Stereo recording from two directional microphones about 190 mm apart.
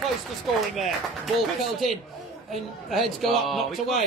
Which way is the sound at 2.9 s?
Centre (ahead or behind).